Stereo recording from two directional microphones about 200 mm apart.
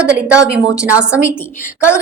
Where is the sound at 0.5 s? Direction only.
5° right (ahead or behind).